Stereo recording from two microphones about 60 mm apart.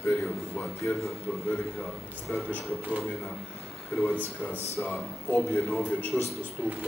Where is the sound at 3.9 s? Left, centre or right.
Left.